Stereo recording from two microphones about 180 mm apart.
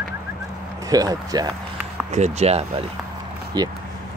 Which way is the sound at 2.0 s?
40° right (ahead or behind).